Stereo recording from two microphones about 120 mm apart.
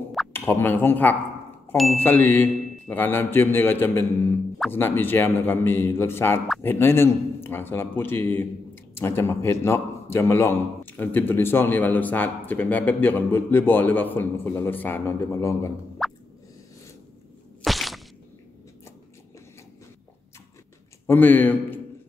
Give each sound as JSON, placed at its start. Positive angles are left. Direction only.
{"t": 0.3, "sound": "a man's voice", "side_deg": 15}
{"t": 16.0, "sound": "plop", "side_deg": 5}
{"t": 17.6, "sound": "a sound", "side_deg": 0}
{"t": 21.1, "sound": "a man's voice", "side_deg": 15}